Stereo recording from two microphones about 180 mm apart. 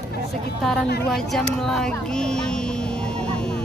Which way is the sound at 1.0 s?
Centre (ahead or behind).